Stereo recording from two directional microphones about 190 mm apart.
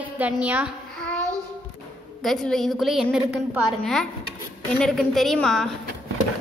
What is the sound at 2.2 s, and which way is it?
A woman's voice, centre (ahead or behind).